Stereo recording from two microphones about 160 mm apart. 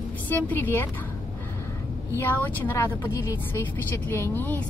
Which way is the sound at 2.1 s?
10° left (ahead or behind).